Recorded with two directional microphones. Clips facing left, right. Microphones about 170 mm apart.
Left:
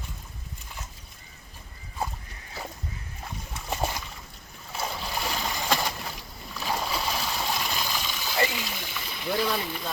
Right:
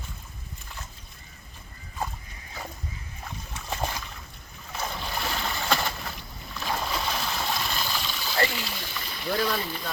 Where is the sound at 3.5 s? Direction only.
10° left (ahead or behind).